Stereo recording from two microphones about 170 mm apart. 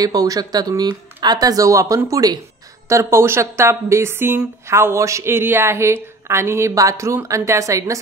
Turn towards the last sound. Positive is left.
turn(degrees=-20)  # may be behind; listen again after turning